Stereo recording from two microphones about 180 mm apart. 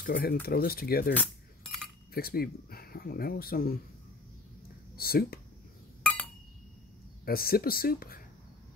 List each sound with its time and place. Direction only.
0.0 s speech: 55° left (ahead or behind)
1.1 s chink: 5° left (ahead or behind)
2.1 s speech: 55° left (ahead or behind)
4.9 s speech: 55° left (ahead or behind)
7.2 s speech: 55° left (ahead or behind)